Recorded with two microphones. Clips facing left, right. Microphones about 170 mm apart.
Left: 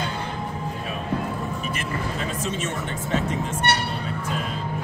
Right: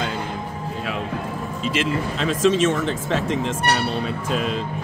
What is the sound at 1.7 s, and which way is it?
Speech, 90° right.